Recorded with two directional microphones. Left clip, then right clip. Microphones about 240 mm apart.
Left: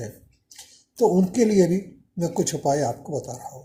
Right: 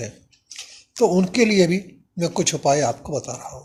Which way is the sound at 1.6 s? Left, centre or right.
Centre.